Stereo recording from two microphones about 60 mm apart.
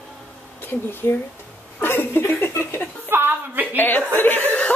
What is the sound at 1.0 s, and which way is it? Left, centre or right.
Speech, left.